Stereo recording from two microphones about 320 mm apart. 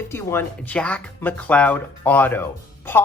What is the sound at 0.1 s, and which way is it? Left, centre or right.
A man's voice, centre.